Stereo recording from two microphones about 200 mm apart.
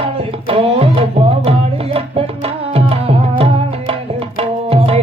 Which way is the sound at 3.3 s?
30° right (ahead or behind).